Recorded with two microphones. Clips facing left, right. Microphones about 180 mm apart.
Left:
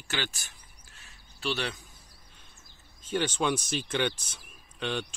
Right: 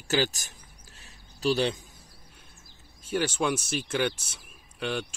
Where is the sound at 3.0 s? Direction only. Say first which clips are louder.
Right 1 dB; 10° right (ahead or behind).